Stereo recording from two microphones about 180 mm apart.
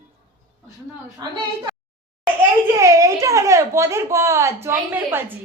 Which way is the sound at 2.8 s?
20° right (ahead or behind).